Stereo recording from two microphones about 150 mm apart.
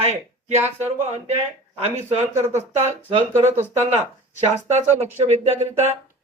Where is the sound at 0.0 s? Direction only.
45° right (ahead or behind).